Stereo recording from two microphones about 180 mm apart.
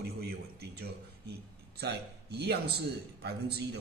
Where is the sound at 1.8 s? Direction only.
65° right (ahead or behind).